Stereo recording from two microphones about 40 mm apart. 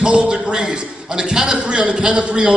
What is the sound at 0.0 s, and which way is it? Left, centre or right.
A man's voice, right.